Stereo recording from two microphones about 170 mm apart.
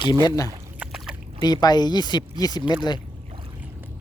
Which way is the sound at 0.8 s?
5° right (ahead or behind).